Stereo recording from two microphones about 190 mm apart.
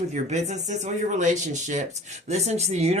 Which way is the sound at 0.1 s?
40° right (ahead or behind).